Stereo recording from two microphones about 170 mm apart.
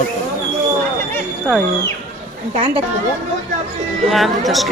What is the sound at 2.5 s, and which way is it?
Speech, 35° right (ahead or behind).